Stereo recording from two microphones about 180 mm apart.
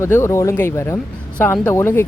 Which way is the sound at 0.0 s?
15° left (ahead or behind).